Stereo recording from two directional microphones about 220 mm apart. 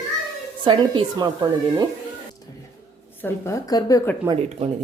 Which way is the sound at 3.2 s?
10° left (ahead or behind).